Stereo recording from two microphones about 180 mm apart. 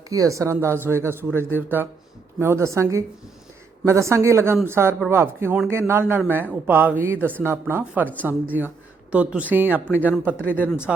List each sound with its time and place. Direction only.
0.1 s speech: 20° right (ahead or behind)